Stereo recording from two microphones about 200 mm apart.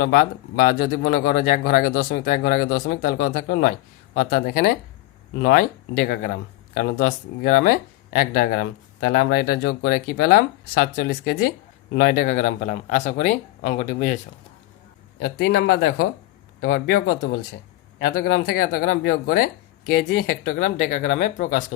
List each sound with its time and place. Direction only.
0.0 s a man's voice: 45° left (ahead or behind)
15.2 s speech: 55° left (ahead or behind)